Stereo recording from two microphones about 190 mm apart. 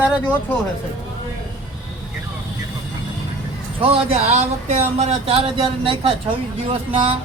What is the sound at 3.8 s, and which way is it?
Speech, 35° right (ahead or behind).